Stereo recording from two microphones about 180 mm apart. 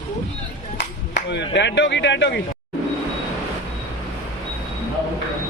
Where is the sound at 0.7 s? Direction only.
75° left (ahead or behind).